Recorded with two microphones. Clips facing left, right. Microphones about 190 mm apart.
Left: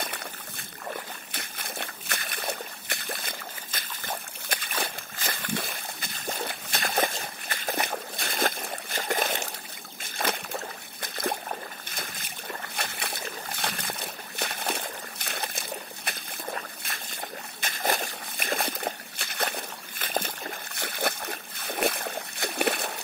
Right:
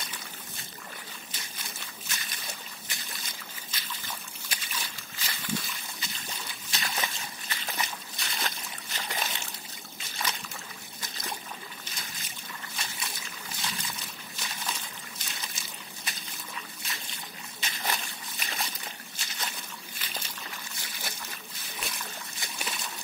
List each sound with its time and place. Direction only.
0.0 s boat: 65° left (ahead or behind)
1.3 s splash: 60° left (ahead or behind)
10.0 s a sound: 55° left (ahead or behind)